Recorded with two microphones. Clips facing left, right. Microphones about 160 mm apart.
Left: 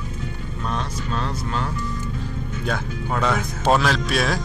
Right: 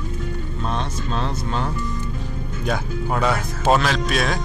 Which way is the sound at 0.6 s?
25° right (ahead or behind).